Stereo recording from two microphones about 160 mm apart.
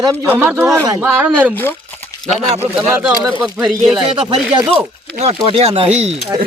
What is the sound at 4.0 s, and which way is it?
Speech, 35° right (ahead or behind).